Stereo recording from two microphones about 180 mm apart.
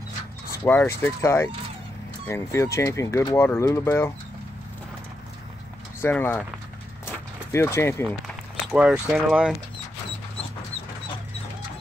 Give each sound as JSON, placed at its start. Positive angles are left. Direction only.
{"t": 0.7, "sound": "speech", "side_deg": 10}
{"t": 5.9, "sound": "speech", "side_deg": 10}
{"t": 7.1, "sound": "walk", "side_deg": 15}
{"t": 8.7, "sound": "speech", "side_deg": -5}